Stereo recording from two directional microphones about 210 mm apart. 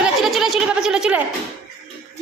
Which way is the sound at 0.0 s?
Centre (ahead or behind).